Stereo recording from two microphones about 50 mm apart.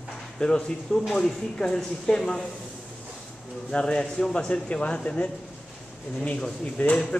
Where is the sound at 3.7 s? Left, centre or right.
Centre.